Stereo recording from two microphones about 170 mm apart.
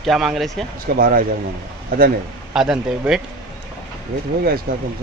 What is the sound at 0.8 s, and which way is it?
Speech, 55° right (ahead or behind).